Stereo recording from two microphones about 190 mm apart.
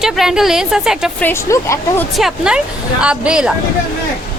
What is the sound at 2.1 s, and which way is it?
Speech, 5° right (ahead or behind).